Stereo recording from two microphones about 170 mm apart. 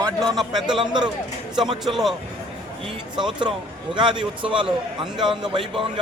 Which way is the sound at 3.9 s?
30° right (ahead or behind).